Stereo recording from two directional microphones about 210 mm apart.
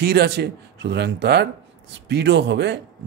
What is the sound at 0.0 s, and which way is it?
Speech, 50° right (ahead or behind).